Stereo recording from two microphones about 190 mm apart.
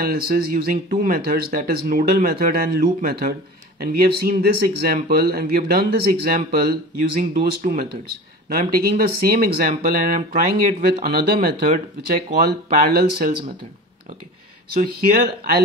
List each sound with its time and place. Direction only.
0.0 s speech: 50° right (ahead or behind)
14.7 s speech: 50° right (ahead or behind)